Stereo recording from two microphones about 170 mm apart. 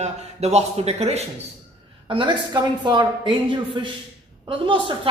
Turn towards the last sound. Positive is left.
turn(degrees=-30)  # may be behind; listen again after turning